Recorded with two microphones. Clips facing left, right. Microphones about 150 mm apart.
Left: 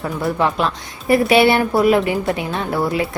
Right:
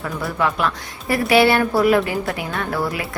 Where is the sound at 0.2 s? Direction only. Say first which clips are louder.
Left 3 dB; 25° left (ahead or behind).